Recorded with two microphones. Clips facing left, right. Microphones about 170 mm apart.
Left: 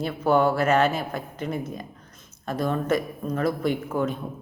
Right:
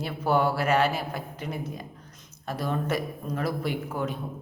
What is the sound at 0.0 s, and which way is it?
A woman's voice, 10° right (ahead or behind).